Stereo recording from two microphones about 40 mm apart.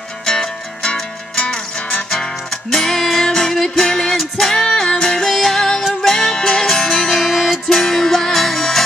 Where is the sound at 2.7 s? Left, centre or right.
Centre.